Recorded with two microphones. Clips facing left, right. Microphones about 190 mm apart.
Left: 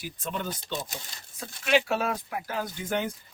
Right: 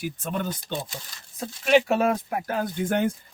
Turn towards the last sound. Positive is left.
turn(degrees=-50)  # may be behind; listen again after turning